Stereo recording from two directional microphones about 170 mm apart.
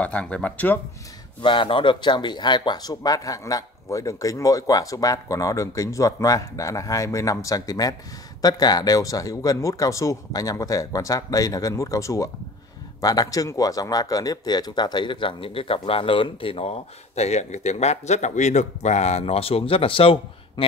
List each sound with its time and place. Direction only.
0.0 s speech: 5° left (ahead or behind)
1.4 s speech: 30° left (ahead or behind)